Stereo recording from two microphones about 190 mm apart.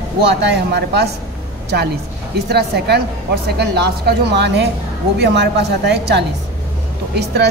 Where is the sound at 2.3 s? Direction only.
60° right (ahead or behind).